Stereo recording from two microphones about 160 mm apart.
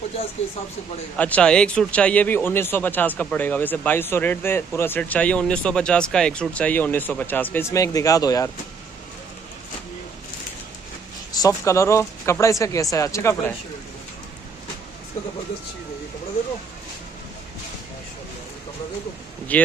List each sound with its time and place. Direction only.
1.1 s a man's voice: 10° left (ahead or behind)
11.3 s a man's voice: 20° left (ahead or behind)
19.5 s a man's voice: 10° left (ahead or behind)